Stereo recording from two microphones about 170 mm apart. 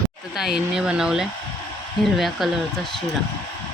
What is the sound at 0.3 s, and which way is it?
Speech, 5° right (ahead or behind).